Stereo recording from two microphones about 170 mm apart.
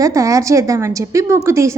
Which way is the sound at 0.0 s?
20° right (ahead or behind).